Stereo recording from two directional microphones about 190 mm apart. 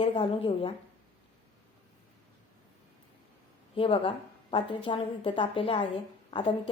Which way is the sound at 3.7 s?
30° left (ahead or behind).